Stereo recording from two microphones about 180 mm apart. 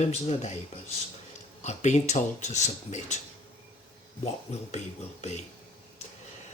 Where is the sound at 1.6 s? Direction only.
40° left (ahead or behind).